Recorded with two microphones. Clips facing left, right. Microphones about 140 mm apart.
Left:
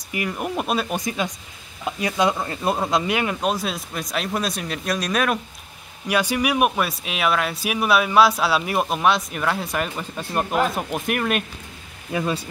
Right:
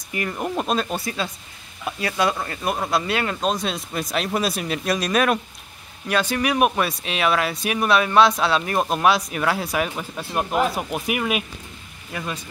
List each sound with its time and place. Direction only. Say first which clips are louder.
0.1 s speech: even; 10° left (ahead or behind)
6.0 s speech: left 1 dB; 10° left (ahead or behind); by 11.4 s 5° right (ahead or behind)